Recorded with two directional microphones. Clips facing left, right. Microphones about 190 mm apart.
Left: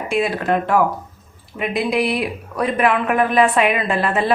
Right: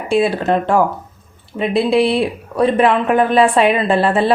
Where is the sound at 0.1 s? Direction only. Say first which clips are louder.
Right 5 dB; 30° right (ahead or behind).